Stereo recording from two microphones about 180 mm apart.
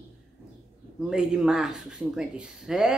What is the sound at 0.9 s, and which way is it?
Speech, 5° right (ahead or behind).